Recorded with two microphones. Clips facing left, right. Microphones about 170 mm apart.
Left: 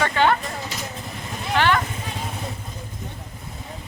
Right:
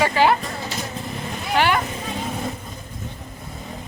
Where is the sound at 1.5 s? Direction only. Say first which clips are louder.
Right 1 dB; 15° right (ahead or behind).